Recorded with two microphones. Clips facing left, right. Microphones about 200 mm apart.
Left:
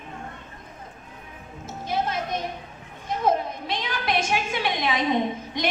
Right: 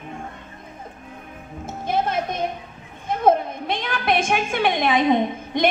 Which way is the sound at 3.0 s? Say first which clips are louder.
Right 5 dB; 55° right (ahead or behind).